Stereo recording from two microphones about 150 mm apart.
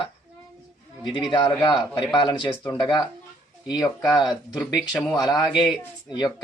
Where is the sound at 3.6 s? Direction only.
25° left (ahead or behind).